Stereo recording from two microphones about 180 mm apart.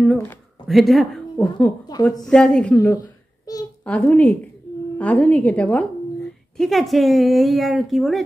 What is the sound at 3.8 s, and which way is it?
A woman's voice, 10° left (ahead or behind).